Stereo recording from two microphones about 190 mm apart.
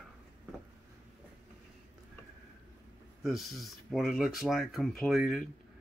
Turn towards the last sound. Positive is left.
turn(degrees=0)  # may be behind; listen again after turning